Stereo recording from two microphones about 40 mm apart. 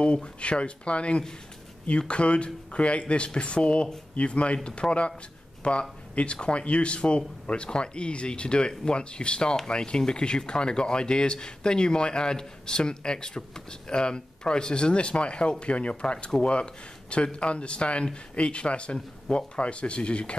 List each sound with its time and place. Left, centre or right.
0.0 s a man's voice: left